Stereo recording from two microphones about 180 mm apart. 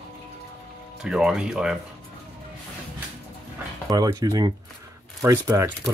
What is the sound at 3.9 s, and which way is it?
Speech, 20° right (ahead or behind).